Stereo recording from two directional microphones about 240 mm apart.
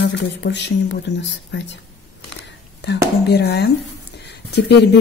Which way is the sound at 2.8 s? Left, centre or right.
Left.